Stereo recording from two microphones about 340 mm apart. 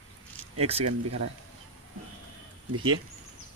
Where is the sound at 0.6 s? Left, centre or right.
Centre.